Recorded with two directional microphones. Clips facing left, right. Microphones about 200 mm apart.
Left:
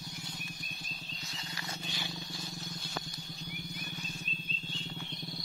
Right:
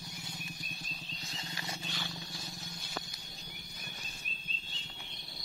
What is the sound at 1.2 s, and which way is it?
Wild animals, 25° right (ahead or behind).